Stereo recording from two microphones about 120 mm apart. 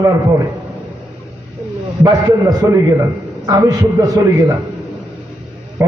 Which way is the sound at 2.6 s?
25° right (ahead or behind).